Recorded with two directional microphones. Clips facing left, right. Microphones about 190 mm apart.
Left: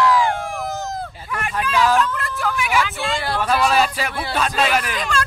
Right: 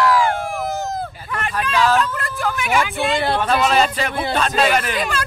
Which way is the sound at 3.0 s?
20° right (ahead or behind).